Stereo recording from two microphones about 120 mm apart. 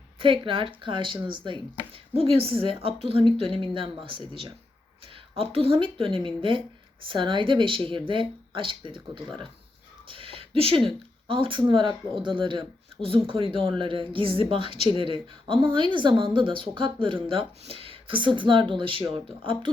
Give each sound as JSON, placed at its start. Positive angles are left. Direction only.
{"t": 0.2, "sound": "speech", "side_deg": -45}
{"t": 1.9, "sound": "speech", "side_deg": -55}
{"t": 3.4, "sound": "a woman's voice", "side_deg": 50}
{"t": 3.8, "sound": "speech", "side_deg": -50}
{"t": 10.1, "sound": "a sound", "side_deg": -50}
{"t": 10.8, "sound": "speech", "side_deg": -45}